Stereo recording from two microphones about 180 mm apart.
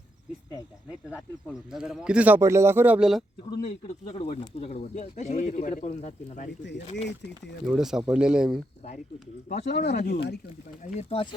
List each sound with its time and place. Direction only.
1.5 s speech: 5° right (ahead or behind)
3.6 s speech: 35° left (ahead or behind)
6.9 s speech: 75° left (ahead or behind)
7.7 s speech: 5° right (ahead or behind)
9.6 s speech: 65° left (ahead or behind)
10.9 s speech: 30° left (ahead or behind)